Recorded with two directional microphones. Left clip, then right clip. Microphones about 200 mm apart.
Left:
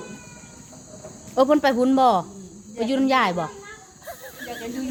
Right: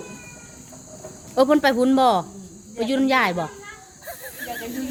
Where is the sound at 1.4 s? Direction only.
10° right (ahead or behind).